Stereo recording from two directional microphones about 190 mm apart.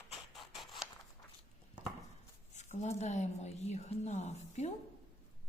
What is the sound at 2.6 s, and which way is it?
A woman's voice, 40° left (ahead or behind).